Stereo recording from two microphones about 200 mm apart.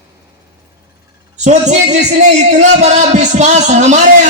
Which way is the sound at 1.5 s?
35° right (ahead or behind).